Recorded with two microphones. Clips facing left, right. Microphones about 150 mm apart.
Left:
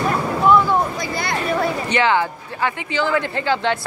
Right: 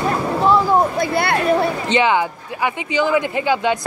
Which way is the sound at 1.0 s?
60° right (ahead or behind).